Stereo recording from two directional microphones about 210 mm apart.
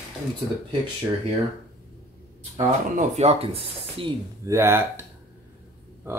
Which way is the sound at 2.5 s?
30° right (ahead or behind).